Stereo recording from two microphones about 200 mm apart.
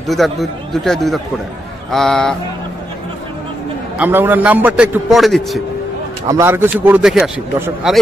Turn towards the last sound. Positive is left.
turn(degrees=-10)  # may be behind; listen again after turning